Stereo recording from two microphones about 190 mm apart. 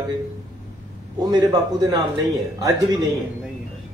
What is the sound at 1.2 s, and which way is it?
Speech, 20° right (ahead or behind).